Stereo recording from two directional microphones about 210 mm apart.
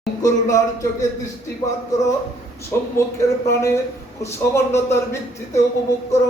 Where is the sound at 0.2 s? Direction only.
15° left (ahead or behind).